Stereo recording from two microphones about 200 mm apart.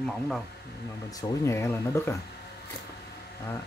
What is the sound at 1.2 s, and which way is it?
Speech, 15° left (ahead or behind).